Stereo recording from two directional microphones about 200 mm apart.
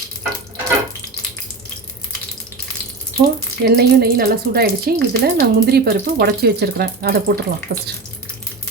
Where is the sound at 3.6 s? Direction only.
50° right (ahead or behind).